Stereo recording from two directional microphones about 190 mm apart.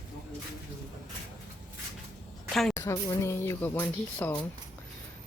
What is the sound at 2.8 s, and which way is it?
Speech, 15° left (ahead or behind).